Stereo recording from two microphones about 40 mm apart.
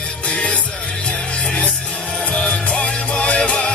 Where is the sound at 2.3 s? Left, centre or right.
Left.